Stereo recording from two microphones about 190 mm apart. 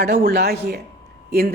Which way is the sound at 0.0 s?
55° right (ahead or behind).